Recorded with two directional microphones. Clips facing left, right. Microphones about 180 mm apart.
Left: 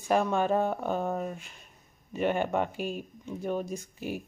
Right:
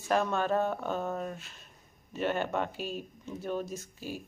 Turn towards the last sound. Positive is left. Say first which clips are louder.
# left 4 dB
turn(degrees=15)  # may be behind; listen again after turning